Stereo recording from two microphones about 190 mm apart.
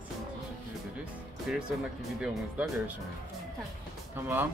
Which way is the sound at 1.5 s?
5° right (ahead or behind).